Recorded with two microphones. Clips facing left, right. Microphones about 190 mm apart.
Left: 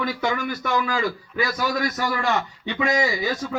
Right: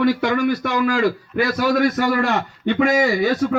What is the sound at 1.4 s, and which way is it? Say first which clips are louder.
A man's voice: right 6 dB; 60° right (ahead or behind).